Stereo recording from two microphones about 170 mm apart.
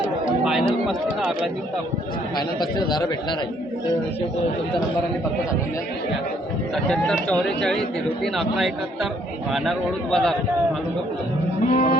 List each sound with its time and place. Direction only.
2.3 s a man's voice: 25° left (ahead or behind)
6.7 s speech: 5° left (ahead or behind)
11.7 s music: 50° left (ahead or behind)